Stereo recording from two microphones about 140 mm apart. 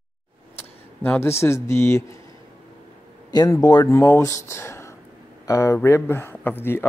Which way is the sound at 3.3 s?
30° left (ahead or behind).